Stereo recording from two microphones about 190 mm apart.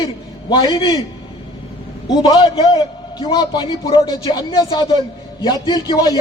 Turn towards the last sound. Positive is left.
turn(degrees=20)  # may be behind; listen again after turning